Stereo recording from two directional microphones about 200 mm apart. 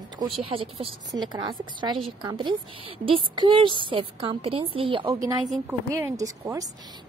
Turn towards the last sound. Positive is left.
turn(degrees=-15)  # may be behind; listen again after turning